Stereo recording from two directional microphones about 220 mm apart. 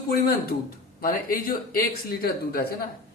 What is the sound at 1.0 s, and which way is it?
A man's voice, 40° left (ahead or behind).